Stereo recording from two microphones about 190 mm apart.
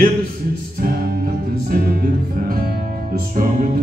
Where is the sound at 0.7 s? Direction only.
50° right (ahead or behind).